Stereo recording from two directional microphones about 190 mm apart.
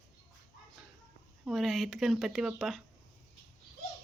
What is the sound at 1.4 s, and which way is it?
Speech, centre (ahead or behind).